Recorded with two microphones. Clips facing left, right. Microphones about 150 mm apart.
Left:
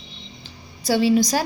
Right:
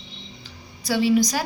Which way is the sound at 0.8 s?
30° left (ahead or behind).